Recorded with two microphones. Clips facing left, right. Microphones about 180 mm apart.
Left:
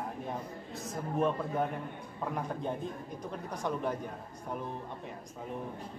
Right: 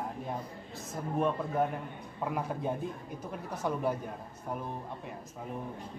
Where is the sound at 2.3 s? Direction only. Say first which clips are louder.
Right 2 dB; 5° right (ahead or behind).